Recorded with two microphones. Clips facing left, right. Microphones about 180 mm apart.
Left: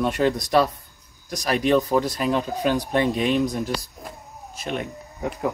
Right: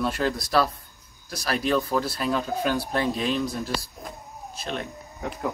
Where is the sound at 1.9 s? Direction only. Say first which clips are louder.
Left 4 dB; 15° left (ahead or behind).